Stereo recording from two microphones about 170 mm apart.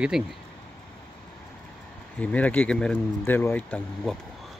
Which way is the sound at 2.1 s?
10° left (ahead or behind).